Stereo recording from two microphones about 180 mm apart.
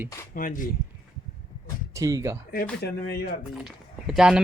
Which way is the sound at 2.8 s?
60° left (ahead or behind).